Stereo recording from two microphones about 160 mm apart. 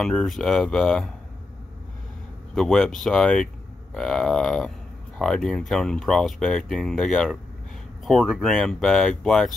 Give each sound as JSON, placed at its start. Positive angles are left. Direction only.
{"t": 0.0, "sound": "speech", "side_deg": 5}
{"t": 2.5, "sound": "speech", "side_deg": 0}